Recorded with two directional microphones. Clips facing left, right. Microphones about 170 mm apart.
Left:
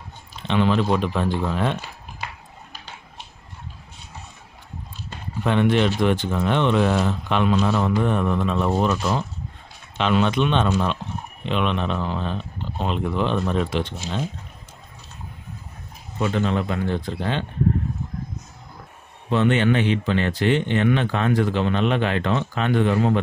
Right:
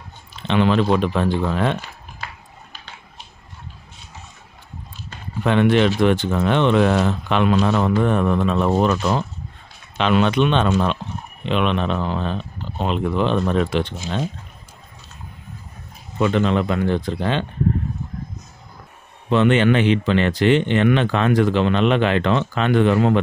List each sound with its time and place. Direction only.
0.5 s speech: 80° right
5.4 s speech: 85° right
7.6 s speech: 65° right (ahead or behind)
9.9 s speech: 75° right (ahead or behind)
16.2 s speech: 90° right
19.3 s speech: 90° right